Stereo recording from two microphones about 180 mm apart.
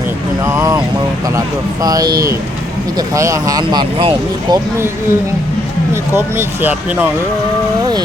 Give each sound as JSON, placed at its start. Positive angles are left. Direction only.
{"t": 0.4, "sound": "vehicle", "side_deg": -15}
{"t": 1.8, "sound": "speech", "side_deg": -20}
{"t": 4.5, "sound": "speech", "side_deg": -15}